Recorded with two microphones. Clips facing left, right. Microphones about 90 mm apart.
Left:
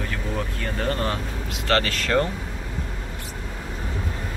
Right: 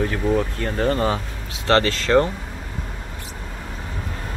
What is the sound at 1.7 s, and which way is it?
Speech, 30° right (ahead or behind).